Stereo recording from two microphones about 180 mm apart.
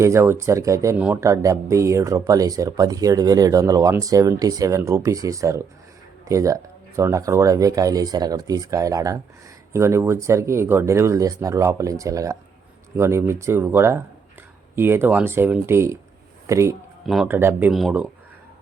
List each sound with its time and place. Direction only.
0.0 s speech: 15° right (ahead or behind)